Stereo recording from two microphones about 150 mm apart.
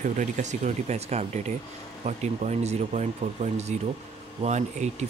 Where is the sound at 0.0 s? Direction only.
55° right (ahead or behind).